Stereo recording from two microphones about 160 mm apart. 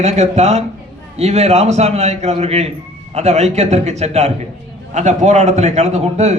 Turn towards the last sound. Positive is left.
turn(degrees=-45)  # may be behind; listen again after turning